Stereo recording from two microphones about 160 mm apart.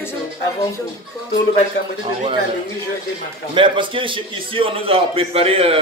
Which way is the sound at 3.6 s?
30° right (ahead or behind).